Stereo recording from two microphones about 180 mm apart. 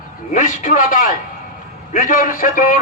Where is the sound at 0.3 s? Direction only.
45° left (ahead or behind).